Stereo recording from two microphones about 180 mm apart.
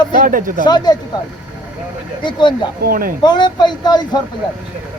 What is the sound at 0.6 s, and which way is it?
Speech, 25° left (ahead or behind).